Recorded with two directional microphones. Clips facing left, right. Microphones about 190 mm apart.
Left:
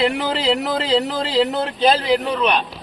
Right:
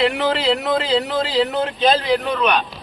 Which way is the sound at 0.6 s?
35° left (ahead or behind).